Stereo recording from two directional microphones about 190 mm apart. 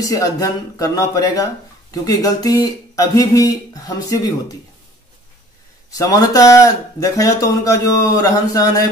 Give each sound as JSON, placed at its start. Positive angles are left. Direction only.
{"t": 0.0, "sound": "speech", "side_deg": 15}
{"t": 5.9, "sound": "speech", "side_deg": 20}